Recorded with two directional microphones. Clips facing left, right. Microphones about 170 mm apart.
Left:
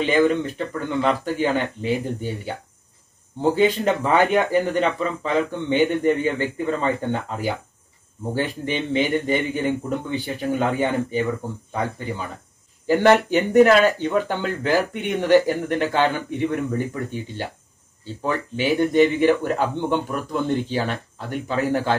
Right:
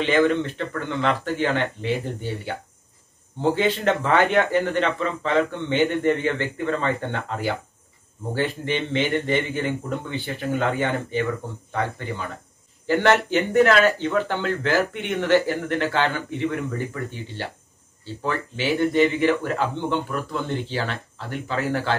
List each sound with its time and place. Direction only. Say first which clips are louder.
0.0 s speech: left 1 dB; 10° left (ahead or behind)
12.8 s speech: left 3 dB; 15° left (ahead or behind)
18.2 s speech: left 2 dB; 15° left (ahead or behind)